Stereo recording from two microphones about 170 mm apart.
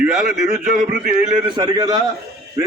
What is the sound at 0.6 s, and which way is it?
Speech, 50° right (ahead or behind).